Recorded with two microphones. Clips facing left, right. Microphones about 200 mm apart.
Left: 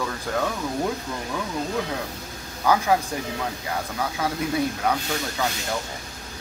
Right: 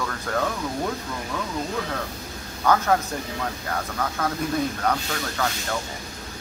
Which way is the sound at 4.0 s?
10° left (ahead or behind).